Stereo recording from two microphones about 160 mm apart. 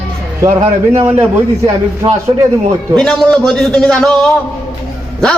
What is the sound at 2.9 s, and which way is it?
A man's voice, 5° left (ahead or behind).